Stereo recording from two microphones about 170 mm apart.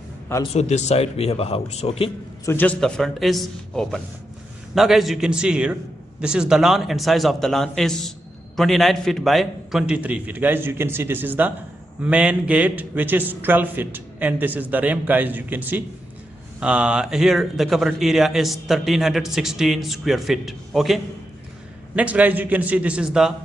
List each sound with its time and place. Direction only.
0.6 s speech: 40° left (ahead or behind)
2.4 s a man's voice: 10° left (ahead or behind)